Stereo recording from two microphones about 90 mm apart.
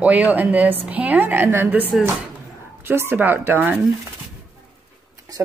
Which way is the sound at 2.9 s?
25° right (ahead or behind).